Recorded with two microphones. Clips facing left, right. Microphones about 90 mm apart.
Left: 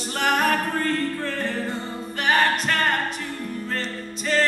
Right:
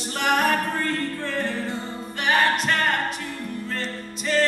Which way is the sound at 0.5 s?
40° left (ahead or behind).